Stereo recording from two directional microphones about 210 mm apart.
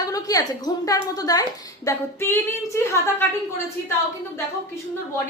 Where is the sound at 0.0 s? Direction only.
15° left (ahead or behind).